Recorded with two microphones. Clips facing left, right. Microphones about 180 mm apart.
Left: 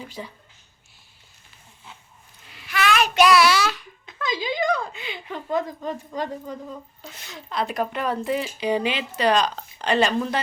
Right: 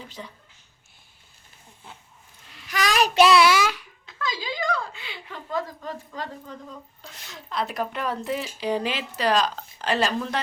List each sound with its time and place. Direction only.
0.0 s speech: 10° left (ahead or behind)
2.6 s child singing: 40° right (ahead or behind)
3.6 s babbling: 10° right (ahead or behind)
4.0 s a sound: 20° left (ahead or behind)
7.0 s speech: centre (ahead or behind)